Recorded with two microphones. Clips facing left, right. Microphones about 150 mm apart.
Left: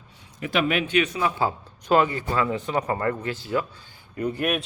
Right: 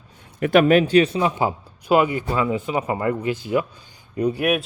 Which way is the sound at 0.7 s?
40° right (ahead or behind).